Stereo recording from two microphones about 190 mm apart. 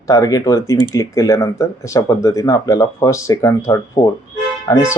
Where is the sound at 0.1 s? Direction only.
20° left (ahead or behind).